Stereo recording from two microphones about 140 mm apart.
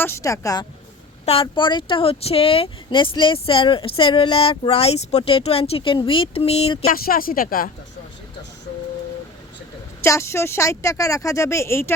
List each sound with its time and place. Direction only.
0.0 s speech: 20° left (ahead or behind)
1.2 s speech: 45° left (ahead or behind)
6.8 s speech: 90° left
10.0 s speech: 20° left (ahead or behind)